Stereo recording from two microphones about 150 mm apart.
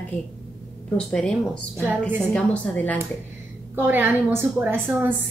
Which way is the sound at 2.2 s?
10° left (ahead or behind).